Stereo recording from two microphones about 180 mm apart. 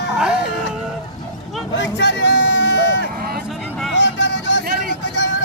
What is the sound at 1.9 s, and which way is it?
Music, 80° left.